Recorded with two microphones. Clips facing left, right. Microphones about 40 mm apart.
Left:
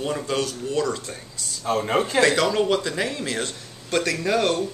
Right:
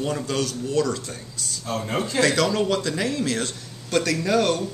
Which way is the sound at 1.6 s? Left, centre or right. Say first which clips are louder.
Left 5 dB; left.